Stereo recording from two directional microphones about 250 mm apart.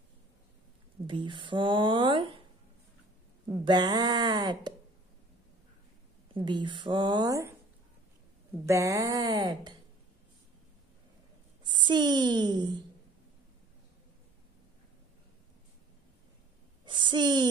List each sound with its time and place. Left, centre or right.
1.0 s speech: centre
3.4 s speech: centre
6.3 s speech: centre
8.6 s speech: centre
11.6 s a woman's voice: centre
16.8 s a child's voice: centre